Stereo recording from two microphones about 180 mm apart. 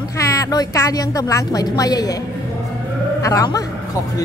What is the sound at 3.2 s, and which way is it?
Speech, 20° left (ahead or behind).